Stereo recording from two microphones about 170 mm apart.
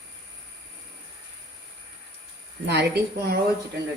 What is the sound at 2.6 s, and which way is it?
Speech, 85° right.